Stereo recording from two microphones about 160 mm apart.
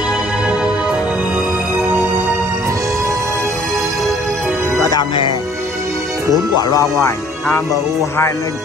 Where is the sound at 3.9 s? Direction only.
Centre (ahead or behind).